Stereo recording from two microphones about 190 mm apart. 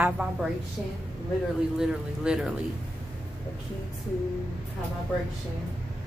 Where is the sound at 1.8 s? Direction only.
5° right (ahead or behind).